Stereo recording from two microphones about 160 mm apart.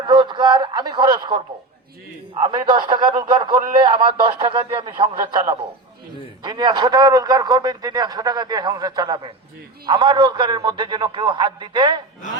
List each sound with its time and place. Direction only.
0.0 s a man's voice: 30° right (ahead or behind)